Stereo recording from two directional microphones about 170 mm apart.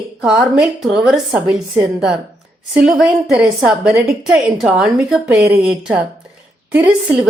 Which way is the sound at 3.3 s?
5° right (ahead or behind).